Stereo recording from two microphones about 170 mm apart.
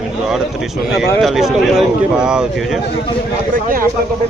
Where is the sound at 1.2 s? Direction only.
Centre (ahead or behind).